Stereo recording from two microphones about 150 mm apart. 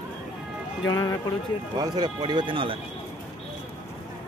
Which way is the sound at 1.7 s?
25° right (ahead or behind).